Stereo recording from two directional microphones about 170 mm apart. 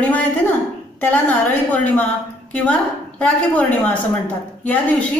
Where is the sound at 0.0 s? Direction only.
10° left (ahead or behind).